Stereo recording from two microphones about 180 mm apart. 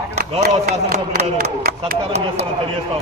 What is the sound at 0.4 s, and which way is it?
A man's voice, 60° right (ahead or behind).